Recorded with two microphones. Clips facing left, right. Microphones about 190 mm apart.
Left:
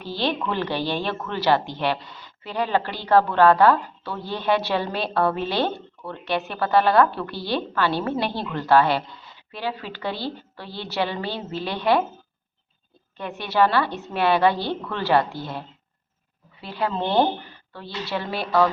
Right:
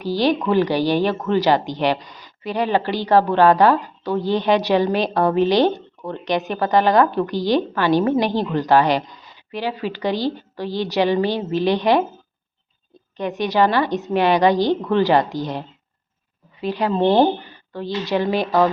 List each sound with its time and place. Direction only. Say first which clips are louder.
0.0 s speech: right 7 dB; 10° right (ahead or behind)
4.0 s speech: right 10 dB; 40° right (ahead or behind)
4.3 s speech: right 5 dB; 15° right (ahead or behind)
13.1 s speech: right 3 dB; 20° right (ahead or behind)